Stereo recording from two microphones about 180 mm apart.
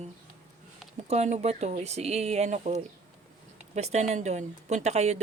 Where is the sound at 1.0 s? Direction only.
40° right (ahead or behind).